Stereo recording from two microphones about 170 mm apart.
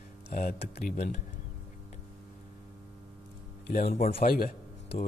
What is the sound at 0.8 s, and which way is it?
Speech, 55° left (ahead or behind).